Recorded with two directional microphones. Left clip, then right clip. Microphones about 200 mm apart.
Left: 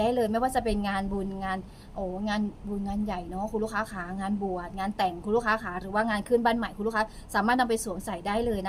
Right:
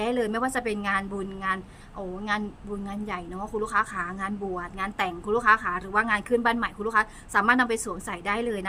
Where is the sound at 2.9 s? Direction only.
20° right (ahead or behind).